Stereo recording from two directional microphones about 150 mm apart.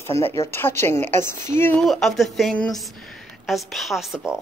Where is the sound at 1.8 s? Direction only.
Centre (ahead or behind).